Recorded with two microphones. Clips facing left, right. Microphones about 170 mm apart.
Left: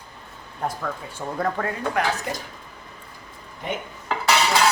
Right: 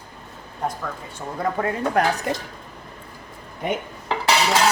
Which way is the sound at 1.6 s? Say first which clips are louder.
Right 3 dB; 10° right (ahead or behind).